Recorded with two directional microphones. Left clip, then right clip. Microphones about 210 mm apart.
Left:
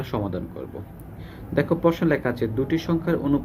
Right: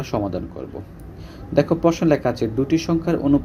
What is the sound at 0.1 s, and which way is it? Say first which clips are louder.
Speech: right 5 dB; 10° right (ahead or behind).